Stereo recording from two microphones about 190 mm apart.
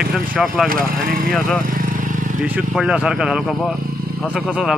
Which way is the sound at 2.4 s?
10° right (ahead or behind).